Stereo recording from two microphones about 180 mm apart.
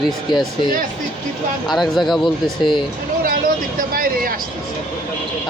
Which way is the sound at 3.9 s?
50° right (ahead or behind).